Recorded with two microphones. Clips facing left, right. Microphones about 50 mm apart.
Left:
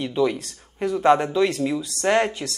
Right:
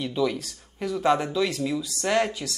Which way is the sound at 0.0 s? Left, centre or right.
Centre.